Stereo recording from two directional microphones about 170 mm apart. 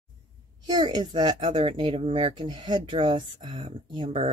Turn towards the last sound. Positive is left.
turn(degrees=-30)  # may be behind; listen again after turning